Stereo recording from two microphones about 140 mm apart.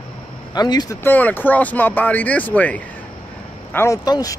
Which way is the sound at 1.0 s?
10° left (ahead or behind).